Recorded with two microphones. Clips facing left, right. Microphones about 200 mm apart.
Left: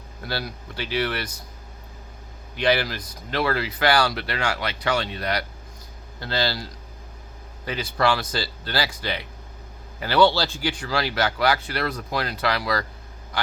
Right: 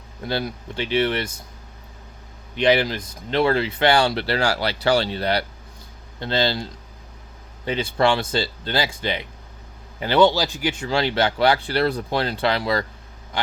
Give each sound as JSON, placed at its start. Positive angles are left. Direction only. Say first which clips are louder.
{"t": 0.2, "sound": "speech", "louder": "right 5 dB", "side_deg": -20}
{"t": 2.6, "sound": "speech", "louder": "right 4 dB", "side_deg": -20}
{"t": 13.3, "sound": "a sound", "louder": "right 2 dB", "side_deg": -25}